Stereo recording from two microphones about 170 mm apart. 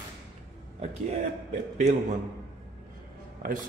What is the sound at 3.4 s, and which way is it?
Speech, 55° right (ahead or behind).